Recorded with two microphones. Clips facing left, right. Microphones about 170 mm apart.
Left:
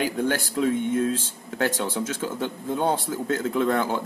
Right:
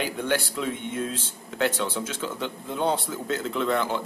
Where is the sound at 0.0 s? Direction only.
45° left (ahead or behind).